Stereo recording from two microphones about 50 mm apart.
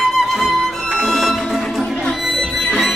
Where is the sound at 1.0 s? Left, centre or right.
Centre.